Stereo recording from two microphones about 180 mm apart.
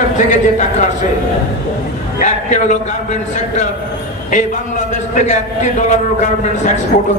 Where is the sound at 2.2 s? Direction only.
40° left (ahead or behind).